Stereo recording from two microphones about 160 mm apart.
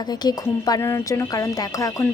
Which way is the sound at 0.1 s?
25° left (ahead or behind).